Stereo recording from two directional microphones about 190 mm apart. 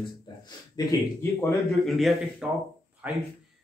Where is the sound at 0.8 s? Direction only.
20° left (ahead or behind).